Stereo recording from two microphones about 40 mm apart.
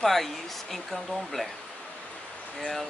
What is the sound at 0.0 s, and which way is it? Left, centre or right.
Speech, centre.